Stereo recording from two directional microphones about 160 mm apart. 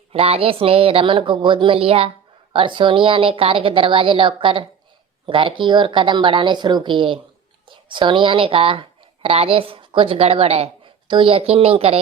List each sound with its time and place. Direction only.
0.1 s a woman's voice: 40° right (ahead or behind)